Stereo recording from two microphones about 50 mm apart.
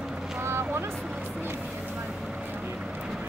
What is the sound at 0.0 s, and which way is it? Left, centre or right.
Vehicle, centre.